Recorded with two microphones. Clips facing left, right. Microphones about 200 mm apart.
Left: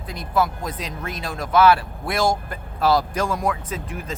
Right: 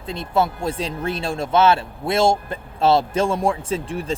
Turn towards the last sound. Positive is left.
turn(degrees=-30)  # may be behind; listen again after turning